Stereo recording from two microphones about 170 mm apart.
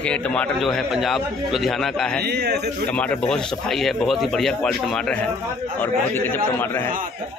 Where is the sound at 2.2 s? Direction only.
75° right (ahead or behind).